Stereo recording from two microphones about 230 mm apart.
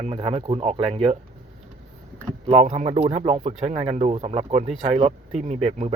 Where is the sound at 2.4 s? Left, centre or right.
Right.